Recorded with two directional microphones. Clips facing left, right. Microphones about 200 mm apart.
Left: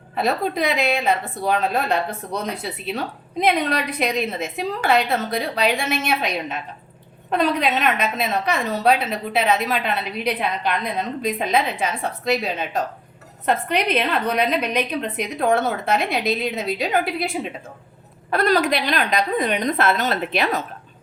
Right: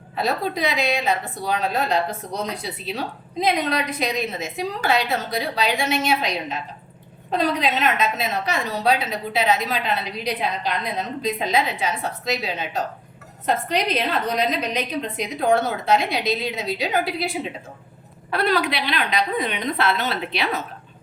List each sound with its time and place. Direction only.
0.2 s a woman's voice: 55° left (ahead or behind)